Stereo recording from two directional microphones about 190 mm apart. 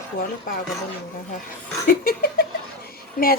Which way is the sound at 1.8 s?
50° left (ahead or behind).